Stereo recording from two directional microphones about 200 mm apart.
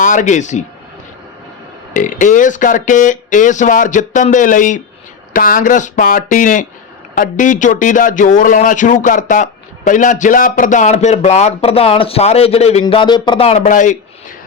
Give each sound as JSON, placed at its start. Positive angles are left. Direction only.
{"t": 0.0, "sound": "speech", "side_deg": 40}
{"t": 1.9, "sound": "a man's voice", "side_deg": 40}